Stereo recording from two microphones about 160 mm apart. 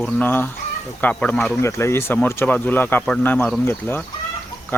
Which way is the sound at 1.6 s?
15° left (ahead or behind).